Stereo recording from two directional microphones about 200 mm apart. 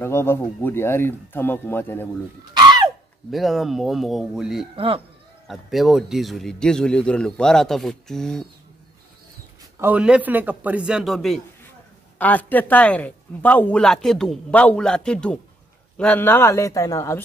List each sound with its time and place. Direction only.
0.0 s speech: 10° left (ahead or behind)
2.5 s a sound: 20° right (ahead or behind)
3.3 s speech: centre (ahead or behind)
4.7 s speech: 25° right (ahead or behind)
5.5 s speech: centre (ahead or behind)
9.8 s a man's voice: 10° right (ahead or behind); by 17.2 s 15° left (ahead or behind)